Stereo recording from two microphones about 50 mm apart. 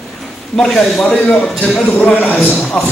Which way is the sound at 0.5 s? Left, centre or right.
Centre.